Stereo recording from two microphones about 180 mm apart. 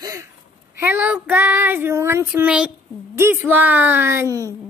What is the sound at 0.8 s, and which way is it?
A woman's voice, 10° right (ahead or behind).